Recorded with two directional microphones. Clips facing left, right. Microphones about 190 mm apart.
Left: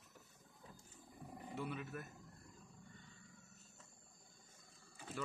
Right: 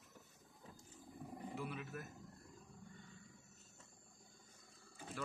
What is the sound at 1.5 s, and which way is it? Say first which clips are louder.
Speech: left 3 dB; centre (ahead or behind).